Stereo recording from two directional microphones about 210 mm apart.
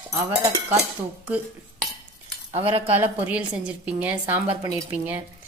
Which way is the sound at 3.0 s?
5° right (ahead or behind).